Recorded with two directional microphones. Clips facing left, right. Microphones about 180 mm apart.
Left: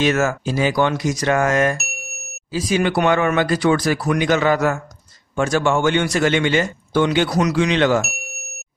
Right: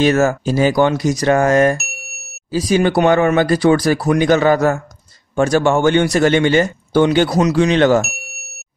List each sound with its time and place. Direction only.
0.0 s a man's voice: 35° right (ahead or behind)
7.6 s speech: 45° right (ahead or behind)